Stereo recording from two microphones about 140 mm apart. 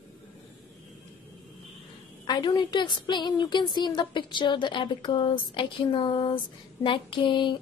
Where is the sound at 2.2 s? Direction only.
30° left (ahead or behind).